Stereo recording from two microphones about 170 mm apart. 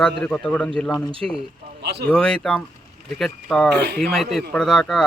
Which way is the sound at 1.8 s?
75° right (ahead or behind).